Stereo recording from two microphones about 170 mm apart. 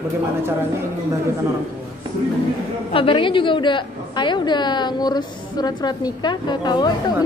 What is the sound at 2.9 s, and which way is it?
A woman's voice, 30° left (ahead or behind).